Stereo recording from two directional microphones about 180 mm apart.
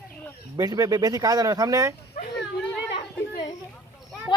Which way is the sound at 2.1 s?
60° left (ahead or behind).